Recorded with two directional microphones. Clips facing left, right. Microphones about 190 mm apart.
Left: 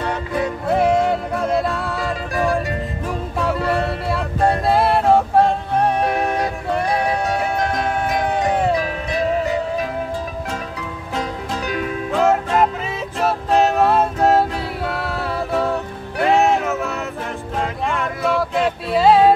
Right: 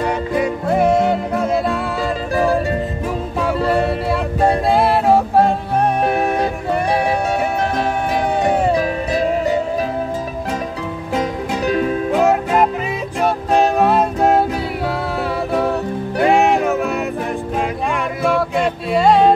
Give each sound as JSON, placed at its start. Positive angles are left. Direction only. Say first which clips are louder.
{"t": 1.0, "sound": "music", "louder": "right 2 dB", "side_deg": -5}
{"t": 2.3, "sound": "music", "louder": "right 3 dB", "side_deg": -30}
{"t": 4.1, "sound": "music", "louder": "even", "side_deg": 0}
{"t": 11.6, "sound": "music", "louder": "right 8 dB", "side_deg": -35}
{"t": 12.1, "sound": "music", "louder": "even", "side_deg": -15}
{"t": 16.2, "sound": "music", "louder": "right 2 dB", "side_deg": -15}
{"t": 18.2, "sound": "music", "louder": "right 2 dB", "side_deg": 0}